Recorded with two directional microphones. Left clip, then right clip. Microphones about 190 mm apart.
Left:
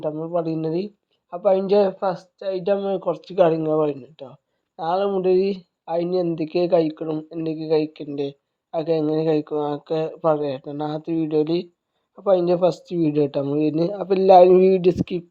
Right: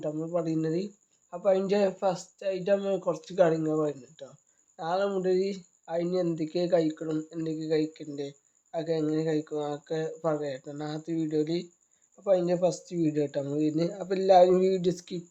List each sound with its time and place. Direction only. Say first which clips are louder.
0.0 s speech: left 7 dB; 25° left (ahead or behind)